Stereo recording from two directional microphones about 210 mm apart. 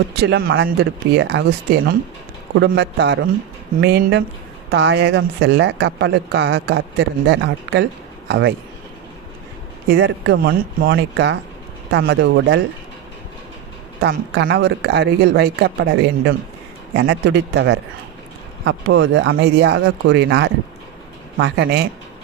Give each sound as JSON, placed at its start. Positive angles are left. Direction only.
{"t": 0.2, "sound": "speech", "side_deg": -50}
{"t": 9.9, "sound": "speech", "side_deg": -55}
{"t": 14.0, "sound": "speech", "side_deg": -60}
{"t": 16.9, "sound": "speech", "side_deg": -70}